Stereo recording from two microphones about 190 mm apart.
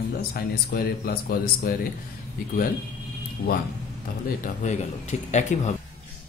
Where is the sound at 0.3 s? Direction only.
50° left (ahead or behind).